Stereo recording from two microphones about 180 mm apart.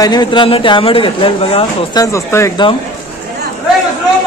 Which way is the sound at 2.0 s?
15° left (ahead or behind).